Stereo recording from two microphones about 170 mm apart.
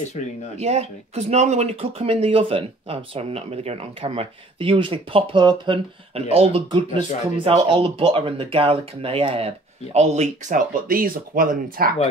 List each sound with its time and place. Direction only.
0.2 s speech: 45° left (ahead or behind)
0.6 s speech: 40° right (ahead or behind); by 11.9 s 55° right (ahead or behind)